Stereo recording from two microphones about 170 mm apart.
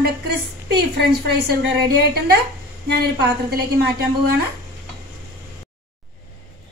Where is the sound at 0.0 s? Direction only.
75° right (ahead or behind).